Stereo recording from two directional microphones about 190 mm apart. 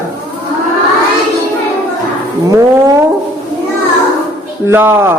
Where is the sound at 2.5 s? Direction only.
15° right (ahead or behind).